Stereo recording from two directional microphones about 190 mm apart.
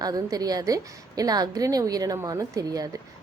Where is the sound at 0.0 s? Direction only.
20° right (ahead or behind).